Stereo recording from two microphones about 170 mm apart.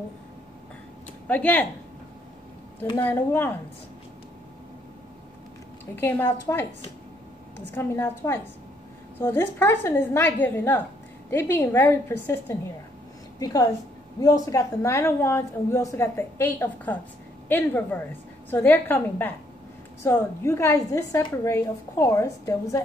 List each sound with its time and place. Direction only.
1.2 s a woman's voice: 10° left (ahead or behind)
3.0 s a woman's voice: 10° left (ahead or behind)
5.9 s a woman's voice: 10° left (ahead or behind)
7.7 s a woman's voice: 15° left (ahead or behind)